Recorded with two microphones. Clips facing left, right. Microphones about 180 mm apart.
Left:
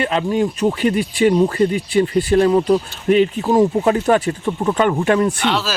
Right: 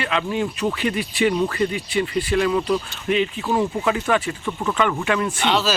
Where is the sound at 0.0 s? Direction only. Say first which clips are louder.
Left 5 dB; 40° left (ahead or behind).